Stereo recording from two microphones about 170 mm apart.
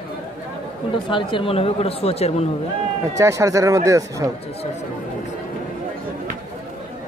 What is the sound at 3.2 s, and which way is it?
Speech, 20° right (ahead or behind).